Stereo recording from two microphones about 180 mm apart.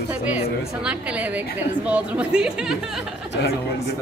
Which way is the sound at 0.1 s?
10° right (ahead or behind).